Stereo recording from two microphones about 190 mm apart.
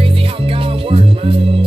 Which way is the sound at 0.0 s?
30° right (ahead or behind).